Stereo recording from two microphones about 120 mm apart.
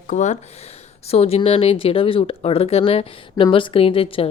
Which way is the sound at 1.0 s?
60° left (ahead or behind).